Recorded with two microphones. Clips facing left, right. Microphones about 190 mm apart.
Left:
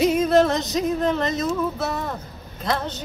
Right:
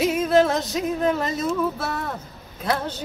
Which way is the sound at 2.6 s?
10° right (ahead or behind).